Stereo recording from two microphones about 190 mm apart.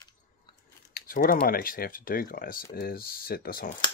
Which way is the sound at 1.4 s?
50° left (ahead or behind).